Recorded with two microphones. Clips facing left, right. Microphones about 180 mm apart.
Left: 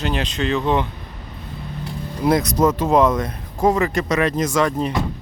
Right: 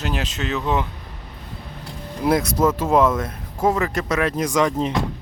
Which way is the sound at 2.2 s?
5° right (ahead or behind).